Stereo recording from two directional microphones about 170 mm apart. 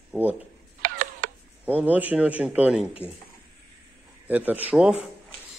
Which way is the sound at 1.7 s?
10° right (ahead or behind).